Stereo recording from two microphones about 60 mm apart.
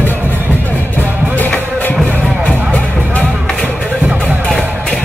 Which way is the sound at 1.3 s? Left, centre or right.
Left.